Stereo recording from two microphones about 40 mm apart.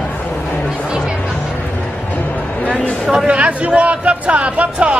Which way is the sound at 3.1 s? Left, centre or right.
Right.